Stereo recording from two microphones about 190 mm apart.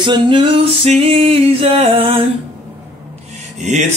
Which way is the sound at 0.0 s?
25° right (ahead or behind).